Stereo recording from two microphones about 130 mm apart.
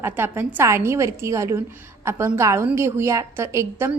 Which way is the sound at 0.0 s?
15° right (ahead or behind).